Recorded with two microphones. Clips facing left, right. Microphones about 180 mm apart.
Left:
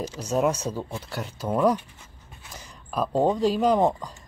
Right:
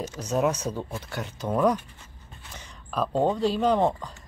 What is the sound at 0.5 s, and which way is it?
Speech, 10° left (ahead or behind).